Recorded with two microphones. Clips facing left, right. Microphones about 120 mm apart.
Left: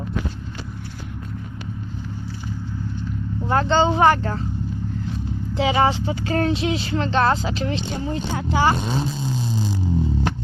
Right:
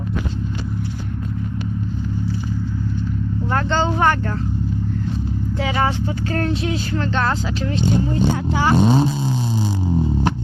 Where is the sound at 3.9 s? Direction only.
5° left (ahead or behind).